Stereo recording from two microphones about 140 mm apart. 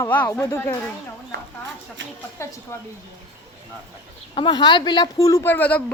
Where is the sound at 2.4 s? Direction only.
20° left (ahead or behind).